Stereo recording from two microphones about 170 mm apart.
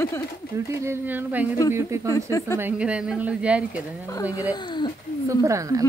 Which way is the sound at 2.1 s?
20° left (ahead or behind).